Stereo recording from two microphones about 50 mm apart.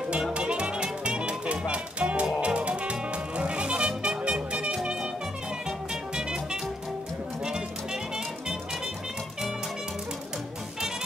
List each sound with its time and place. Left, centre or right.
0.1 s music: right